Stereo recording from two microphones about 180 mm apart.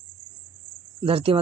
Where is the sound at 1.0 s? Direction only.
30° right (ahead or behind).